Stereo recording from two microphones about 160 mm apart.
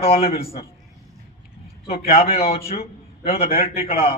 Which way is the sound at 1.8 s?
40° left (ahead or behind).